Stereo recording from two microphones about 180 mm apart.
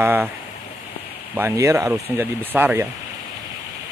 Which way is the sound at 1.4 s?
15° right (ahead or behind).